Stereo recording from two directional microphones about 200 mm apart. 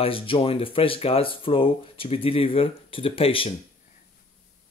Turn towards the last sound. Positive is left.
turn(degrees=25)  # may be behind; listen again after turning